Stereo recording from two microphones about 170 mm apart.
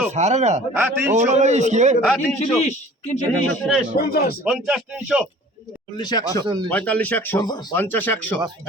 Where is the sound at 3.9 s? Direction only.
65° left (ahead or behind).